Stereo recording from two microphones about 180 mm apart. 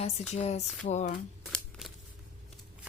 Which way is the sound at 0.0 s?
35° left (ahead or behind).